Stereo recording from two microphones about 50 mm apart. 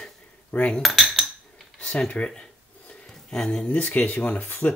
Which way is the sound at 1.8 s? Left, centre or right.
Left.